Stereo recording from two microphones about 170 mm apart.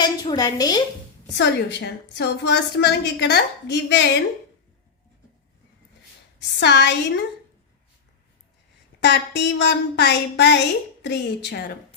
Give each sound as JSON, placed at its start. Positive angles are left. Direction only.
{"t": 0.0, "sound": "a woman's voice", "side_deg": 25}
{"t": 1.4, "sound": "a woman's voice", "side_deg": 85}
{"t": 6.6, "sound": "a woman's voice", "side_deg": 90}
{"t": 9.0, "sound": "a woman's voice", "side_deg": 90}